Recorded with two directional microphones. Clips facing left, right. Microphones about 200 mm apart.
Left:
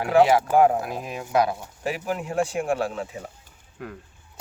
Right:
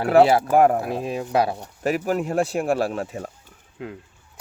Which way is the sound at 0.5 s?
55° right (ahead or behind).